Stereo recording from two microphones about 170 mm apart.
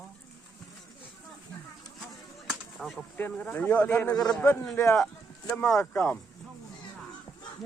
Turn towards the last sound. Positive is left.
turn(degrees=10)  # may be behind; listen again after turning